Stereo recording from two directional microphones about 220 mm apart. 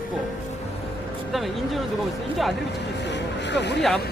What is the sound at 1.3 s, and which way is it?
Speech, centre (ahead or behind).